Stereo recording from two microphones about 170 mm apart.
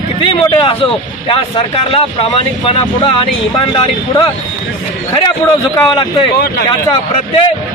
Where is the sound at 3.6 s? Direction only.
30° left (ahead or behind).